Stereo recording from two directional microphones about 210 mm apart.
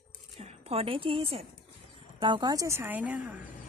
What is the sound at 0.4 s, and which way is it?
A woman's voice, 30° right (ahead or behind).